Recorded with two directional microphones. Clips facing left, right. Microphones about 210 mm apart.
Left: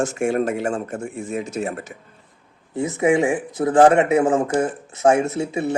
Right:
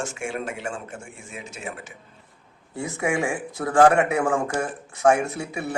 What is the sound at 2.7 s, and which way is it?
Speech, 20° left (ahead or behind).